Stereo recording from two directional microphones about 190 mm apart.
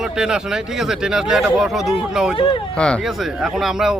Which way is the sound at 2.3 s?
25° left (ahead or behind).